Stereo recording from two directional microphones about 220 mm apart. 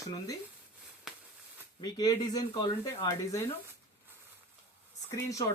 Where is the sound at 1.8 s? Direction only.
15° left (ahead or behind).